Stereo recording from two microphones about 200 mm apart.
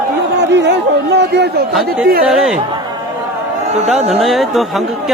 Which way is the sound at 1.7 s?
5° right (ahead or behind).